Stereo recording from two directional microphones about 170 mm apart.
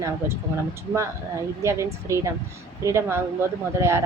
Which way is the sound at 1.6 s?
15° right (ahead or behind).